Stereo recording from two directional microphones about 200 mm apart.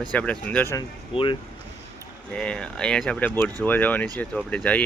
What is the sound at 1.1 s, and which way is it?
Speech, 25° left (ahead or behind).